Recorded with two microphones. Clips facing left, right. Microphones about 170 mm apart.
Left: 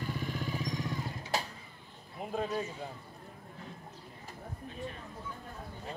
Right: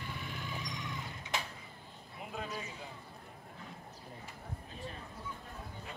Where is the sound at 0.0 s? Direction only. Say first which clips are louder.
Left 7 dB; 40° left (ahead or behind).